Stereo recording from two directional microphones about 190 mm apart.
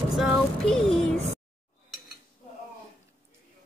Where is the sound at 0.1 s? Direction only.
Centre (ahead or behind).